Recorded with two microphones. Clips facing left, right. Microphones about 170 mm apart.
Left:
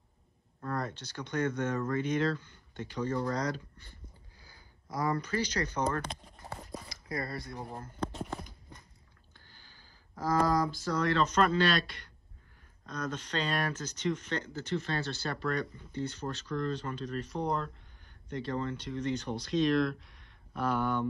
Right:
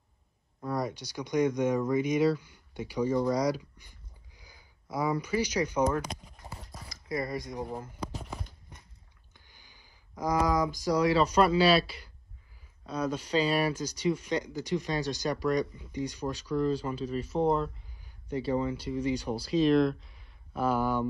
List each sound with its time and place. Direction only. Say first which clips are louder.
0.6 s speech: right 4 dB; 10° right (ahead or behind)
7.7 s a sound: even; 5° right (ahead or behind)
10.7 s speech: right 5 dB; 15° right (ahead or behind)